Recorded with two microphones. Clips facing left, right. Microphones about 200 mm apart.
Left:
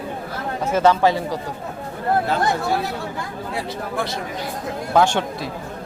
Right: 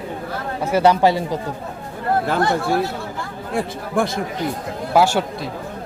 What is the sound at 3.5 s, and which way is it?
Speech, 50° right (ahead or behind).